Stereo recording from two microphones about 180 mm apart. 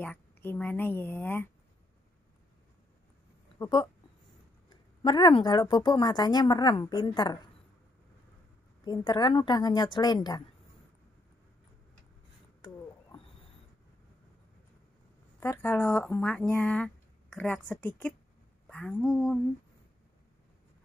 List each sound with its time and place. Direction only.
0.0 s speech: 10° left (ahead or behind)
3.5 s a woman's voice: 20° left (ahead or behind)
8.8 s a woman's voice: 25° left (ahead or behind)
12.6 s a sound: 30° left (ahead or behind)
15.4 s speech: 10° left (ahead or behind)